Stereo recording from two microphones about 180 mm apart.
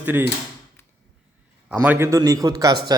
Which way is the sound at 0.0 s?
10° right (ahead or behind).